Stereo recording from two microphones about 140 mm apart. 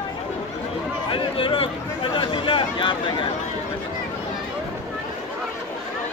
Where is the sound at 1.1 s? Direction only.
35° left (ahead or behind).